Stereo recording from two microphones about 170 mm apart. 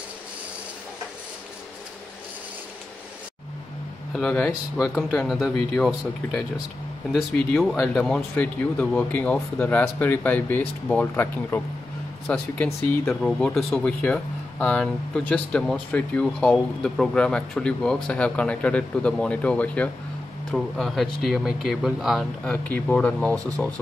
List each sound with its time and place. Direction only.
4.2 s speech: 5° left (ahead or behind)
23.3 s speech: 20° right (ahead or behind)